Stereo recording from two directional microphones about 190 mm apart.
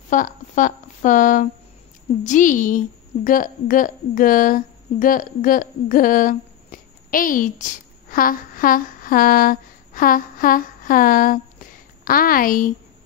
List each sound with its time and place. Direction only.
0.1 s a woman's voice: 45° left (ahead or behind)